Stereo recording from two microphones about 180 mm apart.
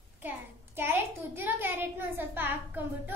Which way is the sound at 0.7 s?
10° right (ahead or behind).